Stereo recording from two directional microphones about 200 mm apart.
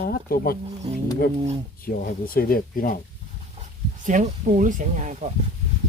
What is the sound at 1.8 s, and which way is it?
Speech, 45° left (ahead or behind).